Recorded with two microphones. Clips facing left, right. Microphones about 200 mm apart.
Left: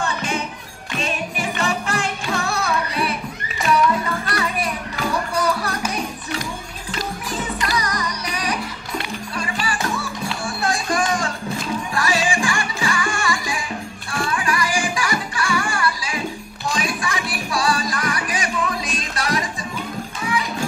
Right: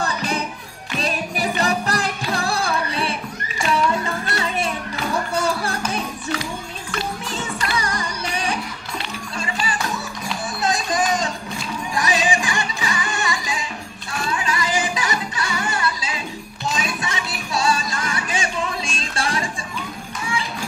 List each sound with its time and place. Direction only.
0.0 s music: 35° right (ahead or behind)
7.7 s music: 30° right (ahead or behind)